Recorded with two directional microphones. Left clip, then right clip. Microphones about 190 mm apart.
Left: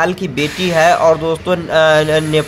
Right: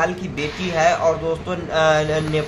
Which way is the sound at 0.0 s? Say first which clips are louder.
Left 6 dB; 45° left (ahead or behind).